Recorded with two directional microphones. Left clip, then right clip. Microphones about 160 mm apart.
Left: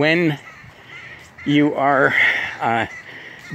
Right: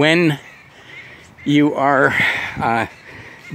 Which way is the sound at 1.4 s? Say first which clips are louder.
Right 1 dB; 40° right (ahead or behind).